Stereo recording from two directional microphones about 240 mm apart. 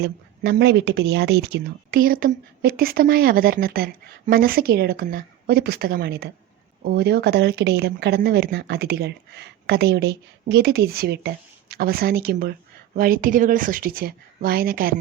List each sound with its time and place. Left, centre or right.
0.0 s speech: right